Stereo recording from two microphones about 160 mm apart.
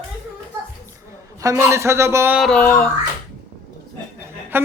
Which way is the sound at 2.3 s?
5° left (ahead or behind).